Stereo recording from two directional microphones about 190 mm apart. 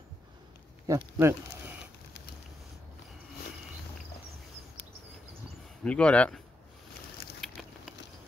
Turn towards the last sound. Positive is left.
turn(degrees=0)  # may be behind; listen again after turning